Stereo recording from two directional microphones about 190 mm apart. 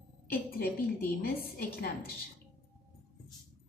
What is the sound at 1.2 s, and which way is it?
Speech, 55° left (ahead or behind).